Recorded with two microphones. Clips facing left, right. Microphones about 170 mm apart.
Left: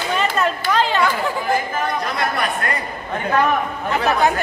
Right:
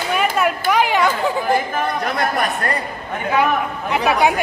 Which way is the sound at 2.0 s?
50° right (ahead or behind).